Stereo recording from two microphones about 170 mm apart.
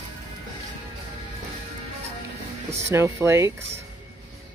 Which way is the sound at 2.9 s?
15° right (ahead or behind).